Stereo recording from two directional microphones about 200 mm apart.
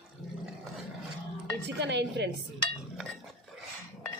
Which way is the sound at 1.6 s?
60° right (ahead or behind).